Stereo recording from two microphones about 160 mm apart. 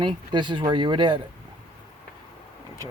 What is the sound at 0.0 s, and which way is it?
Speech, 30° right (ahead or behind).